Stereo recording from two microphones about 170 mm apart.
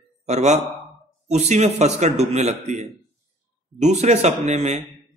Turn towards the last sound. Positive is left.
turn(degrees=-40)  # may be behind; listen again after turning